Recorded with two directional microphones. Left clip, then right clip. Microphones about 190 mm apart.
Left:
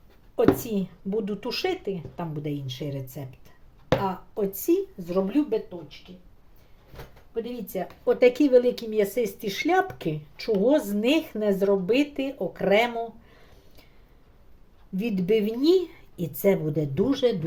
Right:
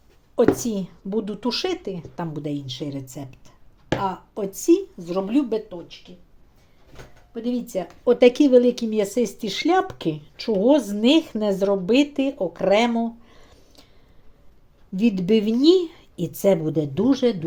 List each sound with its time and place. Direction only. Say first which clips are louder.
0.6 s speech: right 2 dB; 40° right (ahead or behind)
7.4 s speech: right 6 dB; 40° right (ahead or behind)
14.9 s speech: right 4 dB; 35° right (ahead or behind)